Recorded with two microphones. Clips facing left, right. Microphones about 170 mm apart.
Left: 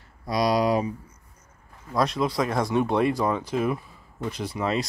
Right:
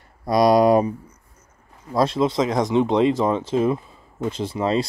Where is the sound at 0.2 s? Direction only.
50° right (ahead or behind).